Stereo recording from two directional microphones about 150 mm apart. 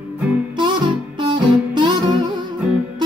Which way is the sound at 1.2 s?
30° right (ahead or behind).